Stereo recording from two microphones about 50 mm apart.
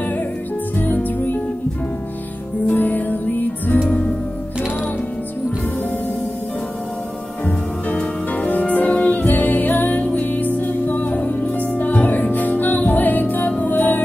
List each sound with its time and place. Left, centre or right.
0.7 s music: left
2.6 s music: left
7.4 s music: left